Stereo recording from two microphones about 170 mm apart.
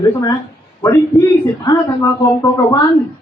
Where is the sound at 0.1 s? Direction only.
20° left (ahead or behind).